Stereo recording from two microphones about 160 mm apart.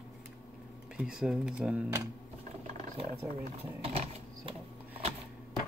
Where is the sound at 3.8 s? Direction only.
35° right (ahead or behind).